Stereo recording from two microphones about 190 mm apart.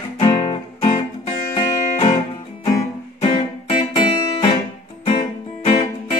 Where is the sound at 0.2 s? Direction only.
25° left (ahead or behind).